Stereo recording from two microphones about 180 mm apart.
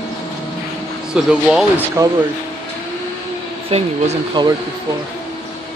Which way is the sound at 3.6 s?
35° right (ahead or behind).